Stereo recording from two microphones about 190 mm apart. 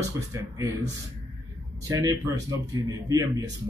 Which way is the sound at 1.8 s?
15° right (ahead or behind).